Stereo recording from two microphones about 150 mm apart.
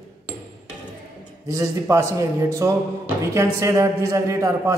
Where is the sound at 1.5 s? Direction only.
20° right (ahead or behind).